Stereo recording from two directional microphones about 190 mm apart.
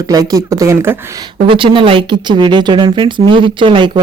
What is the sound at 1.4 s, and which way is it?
Speech, 25° right (ahead or behind).